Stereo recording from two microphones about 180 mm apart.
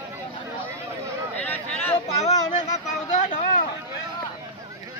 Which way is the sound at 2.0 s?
40° left (ahead or behind).